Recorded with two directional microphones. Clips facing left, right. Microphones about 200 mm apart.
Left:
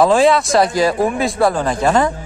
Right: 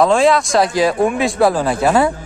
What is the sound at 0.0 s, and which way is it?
Speech, centre (ahead or behind).